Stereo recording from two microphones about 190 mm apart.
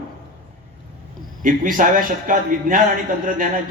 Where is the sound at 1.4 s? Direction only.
45° right (ahead or behind).